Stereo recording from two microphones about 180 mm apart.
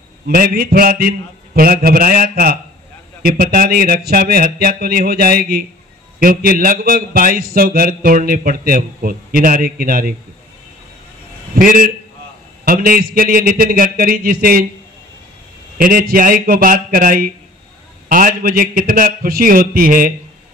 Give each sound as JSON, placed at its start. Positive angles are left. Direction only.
{"t": 0.3, "sound": "a man's voice", "side_deg": -55}
{"t": 11.5, "sound": "a man's voice", "side_deg": -50}
{"t": 15.8, "sound": "a man's voice", "side_deg": -50}